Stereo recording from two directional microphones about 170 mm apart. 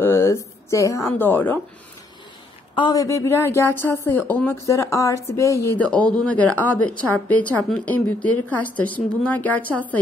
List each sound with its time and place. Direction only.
0.0 s a sound: 15° left (ahead or behind)
1.1 s speech: 10° left (ahead or behind)
2.7 s speech: 25° left (ahead or behind)
5.9 s speech: 5° left (ahead or behind)